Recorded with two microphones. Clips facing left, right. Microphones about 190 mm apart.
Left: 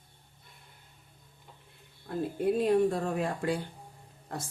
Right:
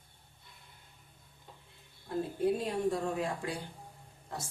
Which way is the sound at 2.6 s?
55° left (ahead or behind).